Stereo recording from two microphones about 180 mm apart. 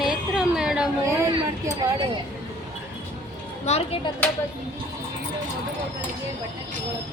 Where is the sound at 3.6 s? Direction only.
35° left (ahead or behind).